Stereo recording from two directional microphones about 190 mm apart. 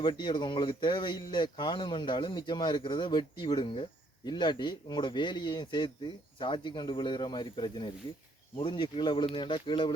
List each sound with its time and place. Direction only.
0.0 s speech: 25° left (ahead or behind)